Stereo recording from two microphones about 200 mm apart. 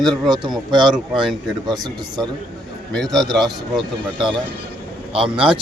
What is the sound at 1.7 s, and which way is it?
Speech, 20° right (ahead or behind).